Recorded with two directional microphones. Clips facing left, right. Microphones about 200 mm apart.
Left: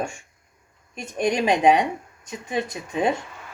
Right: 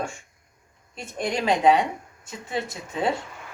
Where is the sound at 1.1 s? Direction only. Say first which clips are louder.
Left 3 dB; 15° left (ahead or behind).